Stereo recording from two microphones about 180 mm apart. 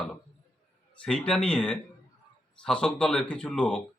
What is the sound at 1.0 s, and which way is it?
A man's voice, 5° left (ahead or behind).